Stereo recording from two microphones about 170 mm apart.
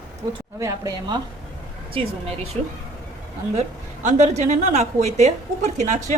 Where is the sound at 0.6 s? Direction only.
20° right (ahead or behind).